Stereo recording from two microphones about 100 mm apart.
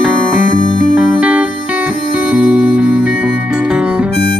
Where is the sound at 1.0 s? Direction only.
15° right (ahead or behind).